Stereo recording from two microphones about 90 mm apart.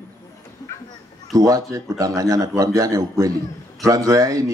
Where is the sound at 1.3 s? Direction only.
40° right (ahead or behind).